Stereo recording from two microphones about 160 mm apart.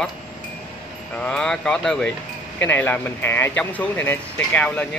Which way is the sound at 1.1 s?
5° left (ahead or behind).